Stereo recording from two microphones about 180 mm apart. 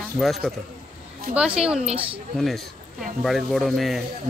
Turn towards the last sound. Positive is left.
turn(degrees=0)  # may be behind; listen again after turning